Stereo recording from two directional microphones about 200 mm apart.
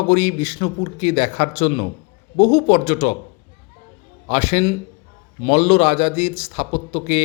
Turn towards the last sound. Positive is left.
turn(degrees=35)  # may be behind; listen again after turning